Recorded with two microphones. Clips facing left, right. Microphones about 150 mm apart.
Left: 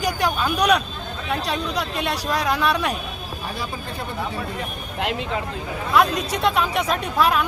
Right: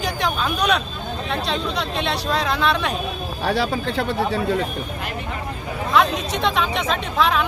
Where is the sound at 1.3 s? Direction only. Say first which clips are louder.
Even; 10° left (ahead or behind).